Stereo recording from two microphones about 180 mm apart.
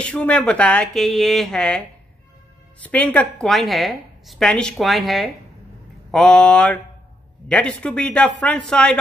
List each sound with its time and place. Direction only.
0.0 s a woman's voice: 5° left (ahead or behind)
2.8 s a woman's voice: 10° left (ahead or behind)